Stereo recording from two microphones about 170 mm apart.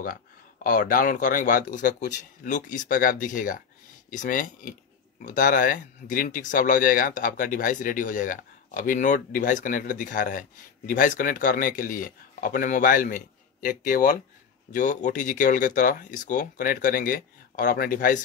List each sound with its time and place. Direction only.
0.7 s speech: 55° left (ahead or behind)